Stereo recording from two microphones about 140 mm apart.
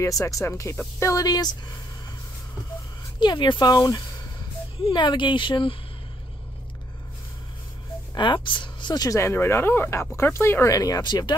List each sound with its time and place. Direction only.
0.0 s speech: 25° left (ahead or behind)
3.2 s speech: 35° left (ahead or behind)
8.1 s speech: 35° left (ahead or behind)